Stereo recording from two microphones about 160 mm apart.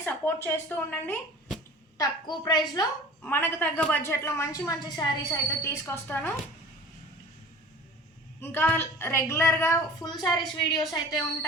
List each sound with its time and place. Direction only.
0.0 s a woman's voice: 15° left (ahead or behind)
2.0 s a woman's voice: 25° left (ahead or behind)
3.2 s a woman's voice: 15° left (ahead or behind)
8.4 s a woman's voice: 15° left (ahead or behind)